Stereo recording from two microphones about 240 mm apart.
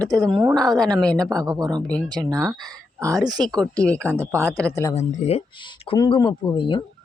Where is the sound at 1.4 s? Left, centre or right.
Centre.